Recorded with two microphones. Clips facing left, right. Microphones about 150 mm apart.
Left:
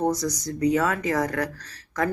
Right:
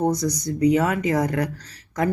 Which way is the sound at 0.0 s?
20° right (ahead or behind).